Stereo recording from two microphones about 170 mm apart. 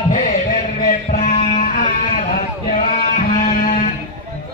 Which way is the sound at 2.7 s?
50° left (ahead or behind).